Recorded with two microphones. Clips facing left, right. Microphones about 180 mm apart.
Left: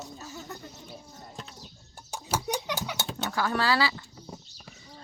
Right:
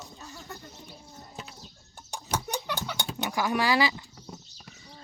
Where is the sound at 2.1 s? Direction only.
10° left (ahead or behind).